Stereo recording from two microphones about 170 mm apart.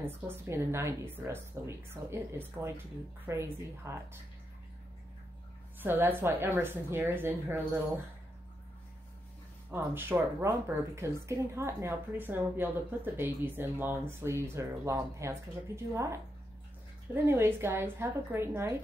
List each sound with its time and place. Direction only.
0.0 s speech: 15° right (ahead or behind)
5.8 s speech: 10° right (ahead or behind)
9.7 s speech: 15° right (ahead or behind)